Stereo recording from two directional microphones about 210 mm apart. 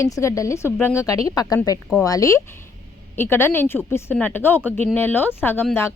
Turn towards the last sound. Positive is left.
turn(degrees=10)  # may be behind; listen again after turning